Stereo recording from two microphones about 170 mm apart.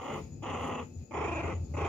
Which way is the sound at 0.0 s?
Centre (ahead or behind).